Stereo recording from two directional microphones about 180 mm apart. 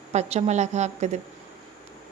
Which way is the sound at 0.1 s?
40° right (ahead or behind).